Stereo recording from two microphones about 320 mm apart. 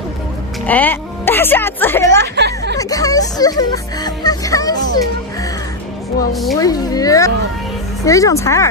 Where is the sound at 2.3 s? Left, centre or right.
Right.